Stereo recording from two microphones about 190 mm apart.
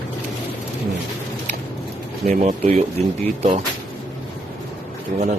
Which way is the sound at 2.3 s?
35° right (ahead or behind).